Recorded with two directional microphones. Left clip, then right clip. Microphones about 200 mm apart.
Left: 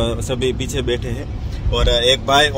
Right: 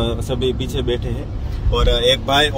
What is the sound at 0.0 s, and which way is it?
Speech, 25° left (ahead or behind).